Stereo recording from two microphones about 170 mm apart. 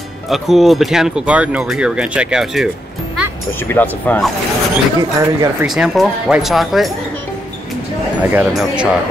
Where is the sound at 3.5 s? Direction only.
10° left (ahead or behind).